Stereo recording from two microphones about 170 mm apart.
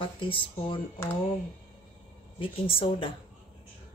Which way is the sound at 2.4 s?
30° left (ahead or behind).